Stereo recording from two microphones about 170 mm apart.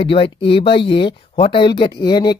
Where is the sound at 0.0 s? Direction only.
30° left (ahead or behind).